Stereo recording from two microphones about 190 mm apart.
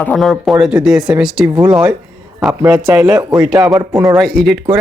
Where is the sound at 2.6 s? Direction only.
10° right (ahead or behind).